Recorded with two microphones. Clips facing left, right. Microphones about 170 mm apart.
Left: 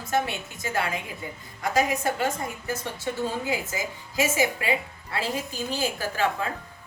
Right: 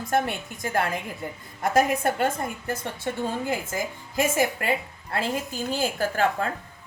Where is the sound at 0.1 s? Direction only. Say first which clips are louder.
Right 1 dB; 50° right (ahead or behind).